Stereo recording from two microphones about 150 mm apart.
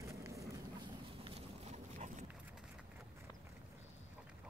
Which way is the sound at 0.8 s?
40° right (ahead or behind).